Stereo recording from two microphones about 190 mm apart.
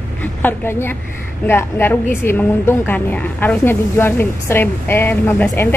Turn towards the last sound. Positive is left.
turn(degrees=10)  # may be behind; listen again after turning